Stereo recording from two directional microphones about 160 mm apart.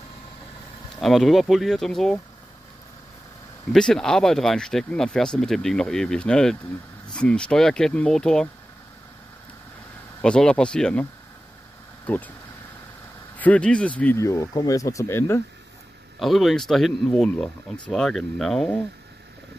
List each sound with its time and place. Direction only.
0.9 s speech: centre (ahead or behind)
3.7 s speech: 5° left (ahead or behind)
10.2 s speech: 5° left (ahead or behind)
12.1 s speech: 10° left (ahead or behind)
13.4 s speech: 10° left (ahead or behind)
16.2 s speech: centre (ahead or behind)